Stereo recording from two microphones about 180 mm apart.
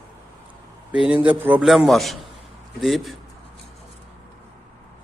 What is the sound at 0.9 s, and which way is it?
A man's voice, 5° right (ahead or behind).